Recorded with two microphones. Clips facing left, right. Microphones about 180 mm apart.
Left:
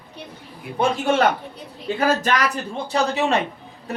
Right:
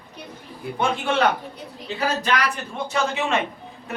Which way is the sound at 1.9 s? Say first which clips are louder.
Left 7 dB; 50° left (ahead or behind).